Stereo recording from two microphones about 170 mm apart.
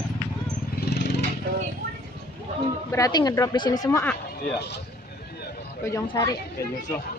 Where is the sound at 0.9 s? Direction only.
80° left.